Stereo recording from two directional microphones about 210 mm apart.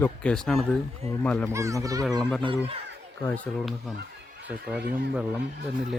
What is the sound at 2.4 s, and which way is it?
Speech, 25° right (ahead or behind).